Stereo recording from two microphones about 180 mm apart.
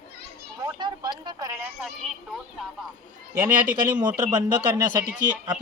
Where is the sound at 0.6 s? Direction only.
25° right (ahead or behind).